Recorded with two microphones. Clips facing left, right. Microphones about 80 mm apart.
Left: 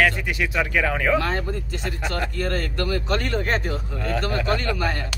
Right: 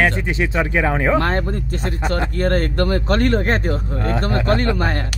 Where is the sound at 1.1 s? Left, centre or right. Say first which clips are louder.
Right 4 dB; right.